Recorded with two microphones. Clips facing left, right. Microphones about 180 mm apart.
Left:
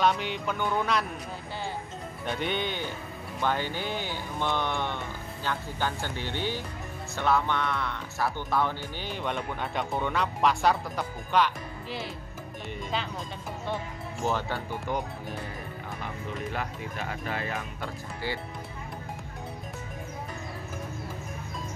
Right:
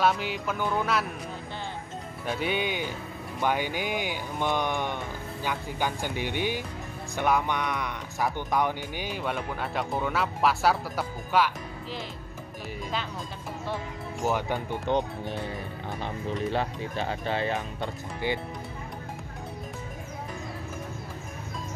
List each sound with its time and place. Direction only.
0.0 s speech: 5° right (ahead or behind)
2.2 s speech: 5° right (ahead or behind)
14.2 s speech: 15° right (ahead or behind)